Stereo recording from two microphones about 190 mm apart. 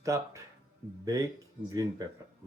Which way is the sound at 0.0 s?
15° right (ahead or behind).